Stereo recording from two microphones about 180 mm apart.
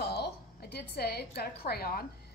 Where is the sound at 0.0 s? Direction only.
65° left (ahead or behind).